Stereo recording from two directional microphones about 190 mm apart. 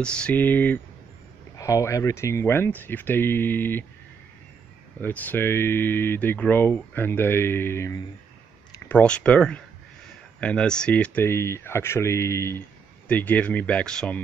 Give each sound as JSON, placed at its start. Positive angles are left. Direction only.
{"t": 0.0, "sound": "speech", "side_deg": 5}
{"t": 5.0, "sound": "speech", "side_deg": 10}